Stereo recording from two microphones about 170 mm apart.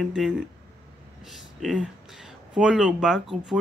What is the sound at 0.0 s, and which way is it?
Speech, centre (ahead or behind).